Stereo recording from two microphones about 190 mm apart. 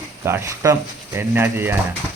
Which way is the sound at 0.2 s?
15° right (ahead or behind).